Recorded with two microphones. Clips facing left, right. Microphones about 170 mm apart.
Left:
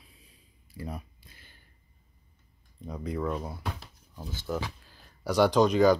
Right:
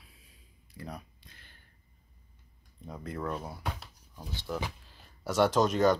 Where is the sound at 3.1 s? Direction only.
Centre (ahead or behind).